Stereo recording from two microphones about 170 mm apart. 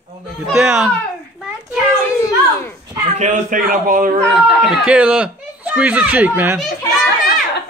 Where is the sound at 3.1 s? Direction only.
45° right (ahead or behind).